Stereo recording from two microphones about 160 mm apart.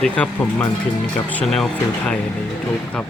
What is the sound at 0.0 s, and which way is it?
Speech, 10° left (ahead or behind).